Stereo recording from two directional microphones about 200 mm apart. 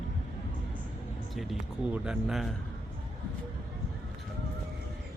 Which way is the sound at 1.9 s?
5° right (ahead or behind).